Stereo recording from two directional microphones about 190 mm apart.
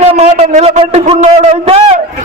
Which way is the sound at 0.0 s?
35° right (ahead or behind).